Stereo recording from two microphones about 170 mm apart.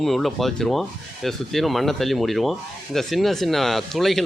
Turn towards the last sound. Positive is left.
turn(degrees=0)  # may be behind; listen again after turning